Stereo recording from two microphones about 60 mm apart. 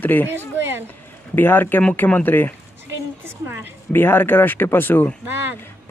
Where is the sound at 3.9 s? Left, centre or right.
Left.